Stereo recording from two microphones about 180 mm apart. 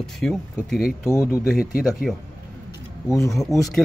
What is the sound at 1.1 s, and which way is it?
Speech, 15° left (ahead or behind).